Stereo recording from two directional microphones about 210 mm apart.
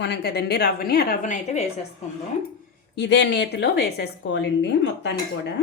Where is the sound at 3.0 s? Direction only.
55° left (ahead or behind).